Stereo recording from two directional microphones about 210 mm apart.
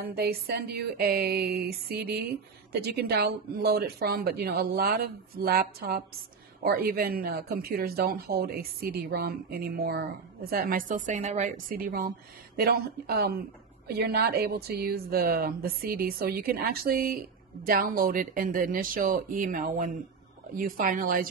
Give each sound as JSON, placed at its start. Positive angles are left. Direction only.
{"t": 0.0, "sound": "speech", "side_deg": -50}